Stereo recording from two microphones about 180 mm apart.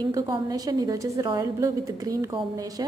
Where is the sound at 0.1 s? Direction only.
20° right (ahead or behind).